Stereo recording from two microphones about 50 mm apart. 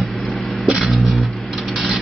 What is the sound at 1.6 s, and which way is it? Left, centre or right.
Rub, centre.